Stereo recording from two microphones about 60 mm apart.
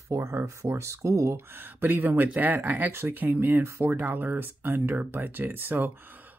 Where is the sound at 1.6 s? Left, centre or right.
Right.